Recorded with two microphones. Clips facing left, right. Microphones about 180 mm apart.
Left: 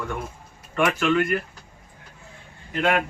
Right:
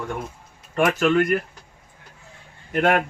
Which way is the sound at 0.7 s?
40° right (ahead or behind).